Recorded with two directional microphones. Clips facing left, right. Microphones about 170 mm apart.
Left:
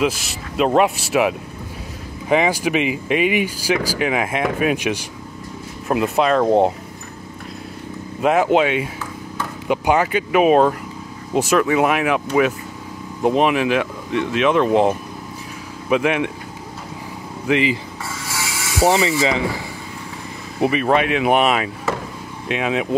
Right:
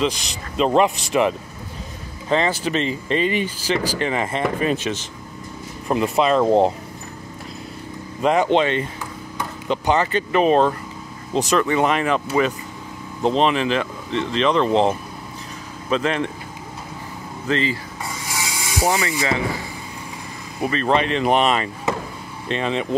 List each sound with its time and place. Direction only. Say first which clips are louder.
0.0 s speech: left 2 dB; 5° left (ahead or behind)
8.2 s speech: left 2 dB; 5° left (ahead or behind)
13.2 s speech: left 2 dB; 10° left (ahead or behind)
17.5 s speech: left 4 dB; 15° left (ahead or behind)
18.0 s filing: right 1 dB; 15° right (ahead or behind)
18.8 s rub: left 5 dB; 20° left (ahead or behind)
20.6 s speech: left 3 dB; 10° left (ahead or behind)